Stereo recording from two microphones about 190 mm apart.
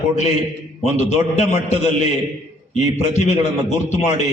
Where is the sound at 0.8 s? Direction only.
35° left (ahead or behind).